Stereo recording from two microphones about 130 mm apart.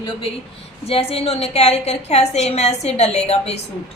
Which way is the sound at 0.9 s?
50° left (ahead or behind).